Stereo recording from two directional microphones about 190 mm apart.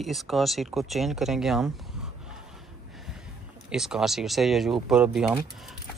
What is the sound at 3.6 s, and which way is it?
Speech, 5° right (ahead or behind).